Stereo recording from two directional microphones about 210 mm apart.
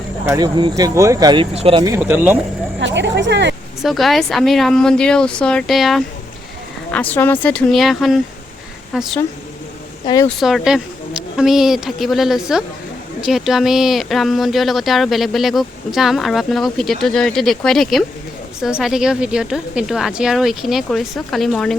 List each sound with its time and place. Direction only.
0.3 s speech: 20° right (ahead or behind)
1.9 s speech: 10° right (ahead or behind)
2.8 s speech: 60° right (ahead or behind)
3.8 s speech: centre (ahead or behind)
10.2 s speech: centre (ahead or behind)